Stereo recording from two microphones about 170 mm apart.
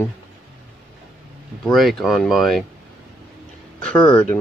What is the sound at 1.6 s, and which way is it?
Speech, centre (ahead or behind).